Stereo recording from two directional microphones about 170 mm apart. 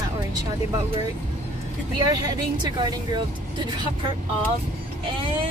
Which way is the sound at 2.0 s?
20° right (ahead or behind).